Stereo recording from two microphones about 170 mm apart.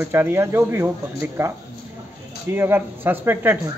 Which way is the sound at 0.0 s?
15° right (ahead or behind).